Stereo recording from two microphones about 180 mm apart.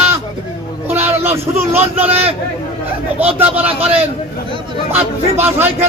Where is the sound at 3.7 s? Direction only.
35° right (ahead or behind).